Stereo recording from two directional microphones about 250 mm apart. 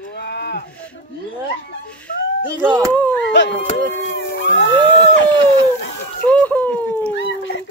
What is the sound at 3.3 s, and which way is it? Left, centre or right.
Howl, left.